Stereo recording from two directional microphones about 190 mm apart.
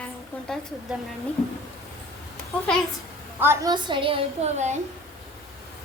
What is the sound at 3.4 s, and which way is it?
A woman's voice, 15° right (ahead or behind).